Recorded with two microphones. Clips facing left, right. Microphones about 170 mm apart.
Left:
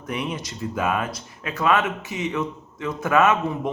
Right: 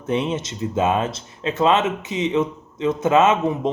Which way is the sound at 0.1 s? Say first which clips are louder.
Right 6 dB; 25° right (ahead or behind).